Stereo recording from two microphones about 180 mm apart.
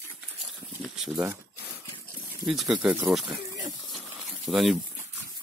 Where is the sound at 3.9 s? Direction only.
Centre (ahead or behind).